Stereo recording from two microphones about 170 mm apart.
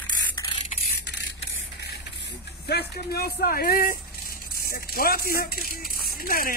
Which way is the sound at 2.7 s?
70° left (ahead or behind).